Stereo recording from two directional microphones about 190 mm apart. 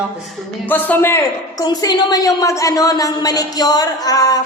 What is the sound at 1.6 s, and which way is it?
A woman's voice, 20° left (ahead or behind).